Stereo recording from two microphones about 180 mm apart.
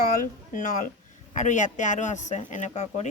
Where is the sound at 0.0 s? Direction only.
50° left (ahead or behind).